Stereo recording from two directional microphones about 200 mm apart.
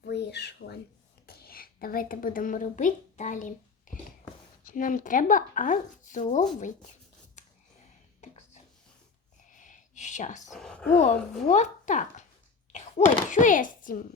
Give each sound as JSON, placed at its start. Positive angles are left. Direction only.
{"t": 0.0, "sound": "a woman's voice", "side_deg": 55}
{"t": 9.5, "sound": "a sound", "side_deg": 40}
{"t": 10.5, "sound": "speech", "side_deg": 5}
{"t": 11.4, "sound": "speech", "side_deg": 35}
{"t": 13.3, "sound": "speech", "side_deg": 40}